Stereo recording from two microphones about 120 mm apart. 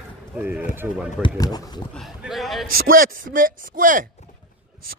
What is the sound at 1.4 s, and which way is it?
Speech, 35° left (ahead or behind).